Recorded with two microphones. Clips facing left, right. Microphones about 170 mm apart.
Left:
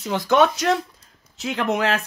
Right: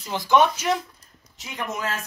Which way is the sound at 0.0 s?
75° left (ahead or behind).